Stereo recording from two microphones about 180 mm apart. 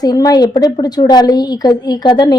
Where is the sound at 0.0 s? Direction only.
20° left (ahead or behind).